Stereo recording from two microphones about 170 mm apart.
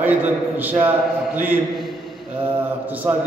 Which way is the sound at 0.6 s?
10° right (ahead or behind).